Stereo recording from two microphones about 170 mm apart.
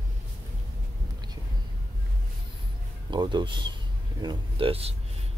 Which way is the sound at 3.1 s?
25° right (ahead or behind).